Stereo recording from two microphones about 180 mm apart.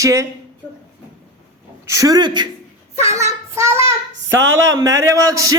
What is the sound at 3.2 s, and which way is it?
Child singing, 15° right (ahead or behind).